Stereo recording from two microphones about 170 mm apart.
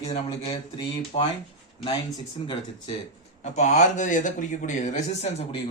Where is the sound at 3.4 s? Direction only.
45° left (ahead or behind).